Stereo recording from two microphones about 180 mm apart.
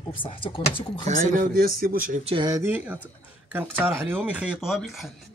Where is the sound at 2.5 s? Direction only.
15° right (ahead or behind).